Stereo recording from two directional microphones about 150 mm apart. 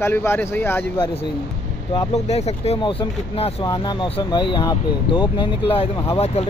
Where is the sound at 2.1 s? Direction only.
45° left (ahead or behind).